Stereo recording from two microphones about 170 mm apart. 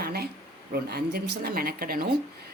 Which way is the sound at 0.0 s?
65° right (ahead or behind).